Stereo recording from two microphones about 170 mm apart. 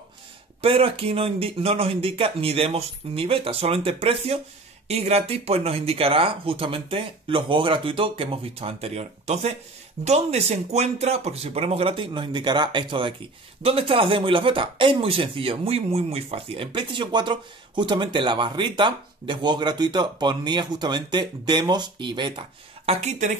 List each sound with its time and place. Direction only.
0.6 s speech: 35° right (ahead or behind)
22.8 s speech: 40° right (ahead or behind)